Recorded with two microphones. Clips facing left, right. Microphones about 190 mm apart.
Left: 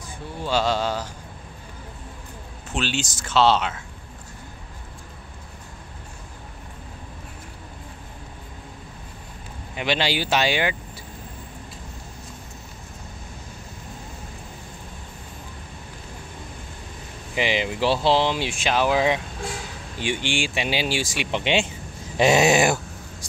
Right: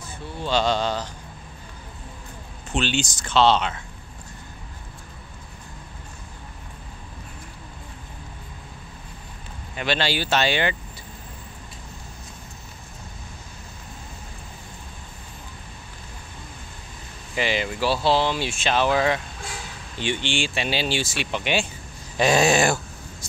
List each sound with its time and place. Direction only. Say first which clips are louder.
0.4 s speech: even; 5° left (ahead or behind)
2.7 s speech: right 2 dB; 5° left (ahead or behind)
9.8 s speech: left 1 dB; 15° left (ahead or behind)
17.4 s speech: left 1 dB; 15° left (ahead or behind)